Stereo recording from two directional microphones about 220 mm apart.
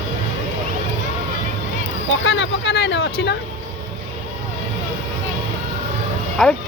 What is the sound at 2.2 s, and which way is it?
Speech, 55° left (ahead or behind).